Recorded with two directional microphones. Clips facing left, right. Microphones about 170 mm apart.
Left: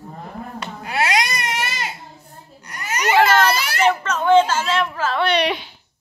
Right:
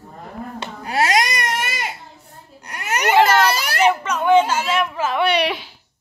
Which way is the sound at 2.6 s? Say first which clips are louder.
Right 2 dB; 65° right (ahead or behind).